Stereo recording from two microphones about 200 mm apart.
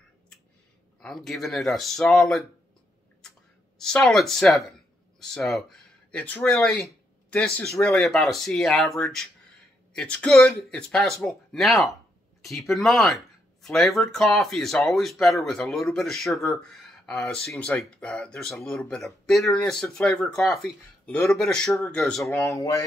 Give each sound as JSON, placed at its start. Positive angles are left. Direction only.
{"t": 1.0, "sound": "speech", "side_deg": 0}
{"t": 3.2, "sound": "a sound", "side_deg": 0}
{"t": 5.2, "sound": "speech", "side_deg": 0}
{"t": 22.6, "sound": "speech", "side_deg": 15}